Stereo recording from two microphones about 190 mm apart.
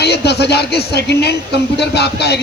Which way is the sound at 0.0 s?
60° left (ahead or behind).